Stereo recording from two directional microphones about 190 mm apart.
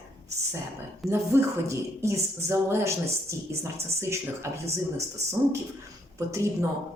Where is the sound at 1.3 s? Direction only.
15° right (ahead or behind).